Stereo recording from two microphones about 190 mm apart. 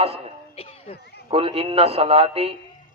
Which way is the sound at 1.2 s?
30° right (ahead or behind).